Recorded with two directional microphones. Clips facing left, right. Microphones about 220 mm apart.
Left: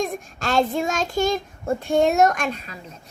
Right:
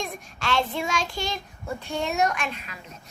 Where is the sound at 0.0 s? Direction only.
40° left (ahead or behind).